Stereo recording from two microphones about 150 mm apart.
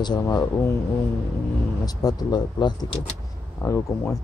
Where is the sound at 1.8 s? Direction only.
25° left (ahead or behind).